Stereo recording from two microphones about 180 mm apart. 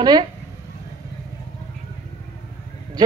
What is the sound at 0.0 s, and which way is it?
Speech, 25° right (ahead or behind).